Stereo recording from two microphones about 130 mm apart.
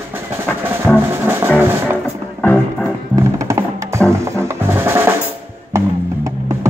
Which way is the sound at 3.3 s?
25° right (ahead or behind).